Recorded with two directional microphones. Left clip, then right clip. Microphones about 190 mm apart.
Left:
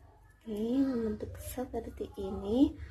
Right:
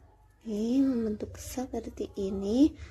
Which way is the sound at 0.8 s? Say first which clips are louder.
Right 3 dB; 35° right (ahead or behind).